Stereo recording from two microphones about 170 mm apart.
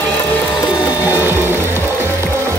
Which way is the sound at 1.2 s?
15° right (ahead or behind).